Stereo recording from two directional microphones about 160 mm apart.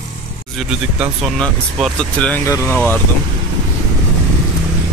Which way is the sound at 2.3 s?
15° left (ahead or behind).